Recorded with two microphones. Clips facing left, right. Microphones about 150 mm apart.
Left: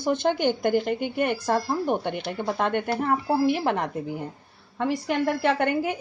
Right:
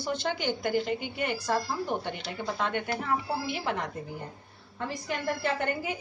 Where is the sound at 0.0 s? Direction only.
50° left (ahead or behind).